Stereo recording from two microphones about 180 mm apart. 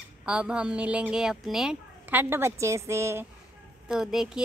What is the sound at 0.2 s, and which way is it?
Speech, 5° right (ahead or behind).